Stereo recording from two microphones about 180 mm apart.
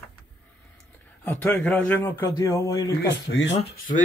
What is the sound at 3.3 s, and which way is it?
Speech, 90° left.